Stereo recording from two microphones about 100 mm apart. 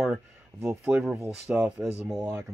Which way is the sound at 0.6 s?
10° right (ahead or behind).